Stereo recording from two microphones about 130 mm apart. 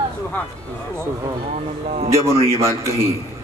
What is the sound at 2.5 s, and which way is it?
Speech, 20° right (ahead or behind).